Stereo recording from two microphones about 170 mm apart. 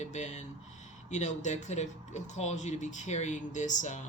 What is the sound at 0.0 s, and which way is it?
Speech, 45° left (ahead or behind).